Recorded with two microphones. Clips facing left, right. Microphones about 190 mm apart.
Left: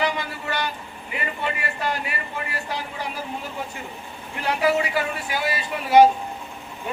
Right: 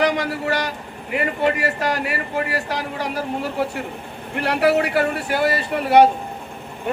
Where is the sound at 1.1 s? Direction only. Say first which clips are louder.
Right 9 dB; 65° right (ahead or behind).